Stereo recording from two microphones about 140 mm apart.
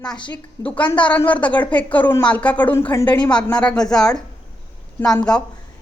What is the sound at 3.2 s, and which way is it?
Speech, 5° left (ahead or behind).